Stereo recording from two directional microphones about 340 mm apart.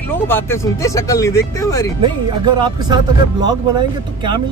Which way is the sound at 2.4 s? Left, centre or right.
Centre.